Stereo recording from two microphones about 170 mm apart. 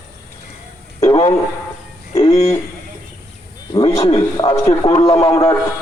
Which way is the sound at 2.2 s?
35° left (ahead or behind).